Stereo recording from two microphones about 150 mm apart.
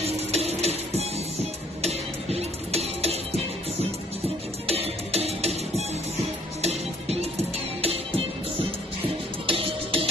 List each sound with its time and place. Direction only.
0.0 s music: 45° right (ahead or behind)
4.6 s music: 40° right (ahead or behind)